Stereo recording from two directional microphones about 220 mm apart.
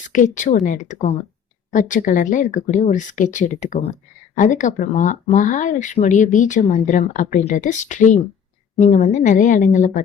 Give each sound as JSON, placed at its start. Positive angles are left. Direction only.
{"t": 0.1, "sound": "speech", "side_deg": 35}